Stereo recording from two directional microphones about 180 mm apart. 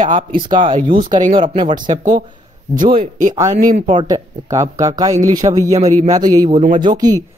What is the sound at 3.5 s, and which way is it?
Speech, 50° right (ahead or behind).